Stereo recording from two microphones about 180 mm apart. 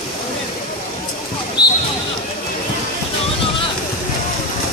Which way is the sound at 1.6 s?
5° right (ahead or behind).